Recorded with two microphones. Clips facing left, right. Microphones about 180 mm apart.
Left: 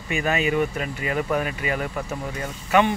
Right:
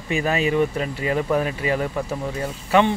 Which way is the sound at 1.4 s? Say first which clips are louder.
Right 4 dB; 30° right (ahead or behind).